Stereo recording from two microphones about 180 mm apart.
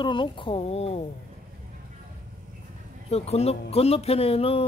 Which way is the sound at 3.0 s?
35° left (ahead or behind).